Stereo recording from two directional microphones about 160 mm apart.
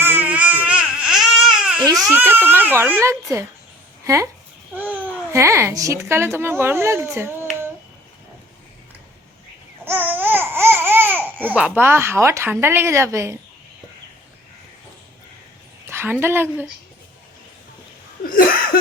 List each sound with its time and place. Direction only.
0.0 s baby cry: 10° right (ahead or behind)
2.1 s a child's voice: 15° right (ahead or behind)
9.8 s babbling: 10° right (ahead or behind)
11.4 s speech: 10° right (ahead or behind)
15.9 s a sound: 15° right (ahead or behind)
16.2 s speech: 15° right (ahead or behind)
18.3 s a sound: 65° left (ahead or behind)